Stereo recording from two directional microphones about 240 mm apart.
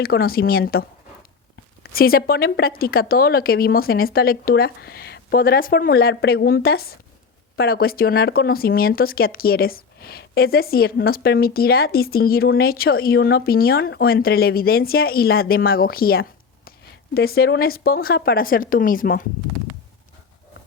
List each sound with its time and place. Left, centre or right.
0.0 s speech: left